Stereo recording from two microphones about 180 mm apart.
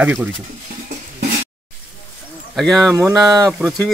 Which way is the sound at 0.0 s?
10° right (ahead or behind).